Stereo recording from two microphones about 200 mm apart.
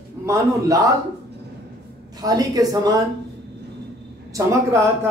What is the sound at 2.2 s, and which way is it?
Speech, 20° right (ahead or behind).